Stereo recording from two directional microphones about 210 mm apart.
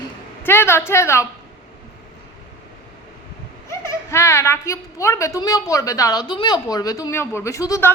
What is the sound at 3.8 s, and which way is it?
A woman's voice, 15° left (ahead or behind).